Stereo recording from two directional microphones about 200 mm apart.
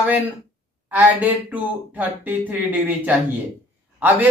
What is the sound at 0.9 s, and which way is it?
Speech, 10° right (ahead or behind).